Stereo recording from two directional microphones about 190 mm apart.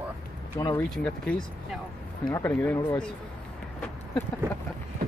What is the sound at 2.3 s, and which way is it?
Speech, 15° left (ahead or behind).